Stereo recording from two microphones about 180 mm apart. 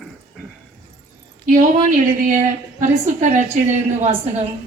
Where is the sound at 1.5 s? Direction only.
50° right (ahead or behind).